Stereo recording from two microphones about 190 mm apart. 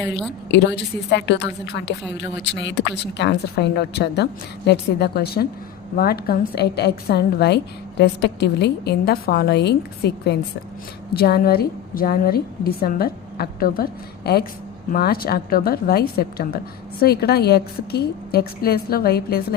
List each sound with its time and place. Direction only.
0.5 s a woman's voice: 65° left (ahead or behind)